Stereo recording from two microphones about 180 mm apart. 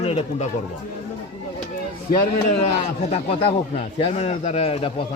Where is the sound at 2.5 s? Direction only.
35° left (ahead or behind).